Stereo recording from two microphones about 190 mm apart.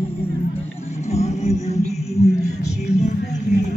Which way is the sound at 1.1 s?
35° left (ahead or behind).